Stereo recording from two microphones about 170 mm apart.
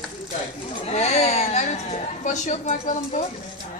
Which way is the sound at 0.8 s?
40° left (ahead or behind).